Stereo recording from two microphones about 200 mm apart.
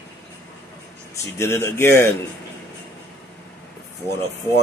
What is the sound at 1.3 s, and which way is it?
Speech, 10° left (ahead or behind).